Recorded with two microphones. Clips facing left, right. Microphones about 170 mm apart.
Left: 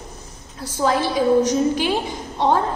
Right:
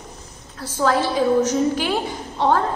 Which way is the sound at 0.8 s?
20° left (ahead or behind).